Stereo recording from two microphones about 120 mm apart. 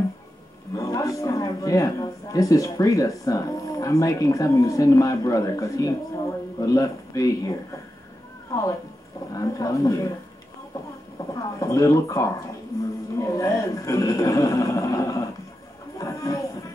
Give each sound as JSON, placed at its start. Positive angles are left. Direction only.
{"t": 0.7, "sound": "a man's voice", "side_deg": 25}
{"t": 11.3, "sound": "speech", "side_deg": 30}
{"t": 16.0, "sound": "music", "side_deg": 30}